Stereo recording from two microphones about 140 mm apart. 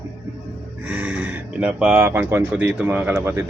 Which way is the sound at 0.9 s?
10° right (ahead or behind).